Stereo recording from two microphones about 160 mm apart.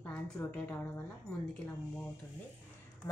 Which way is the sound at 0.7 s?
15° left (ahead or behind).